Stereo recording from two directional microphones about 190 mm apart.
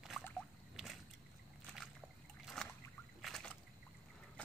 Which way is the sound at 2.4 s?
5° left (ahead or behind).